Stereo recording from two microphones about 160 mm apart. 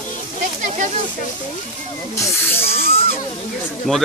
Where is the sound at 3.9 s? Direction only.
5° left (ahead or behind).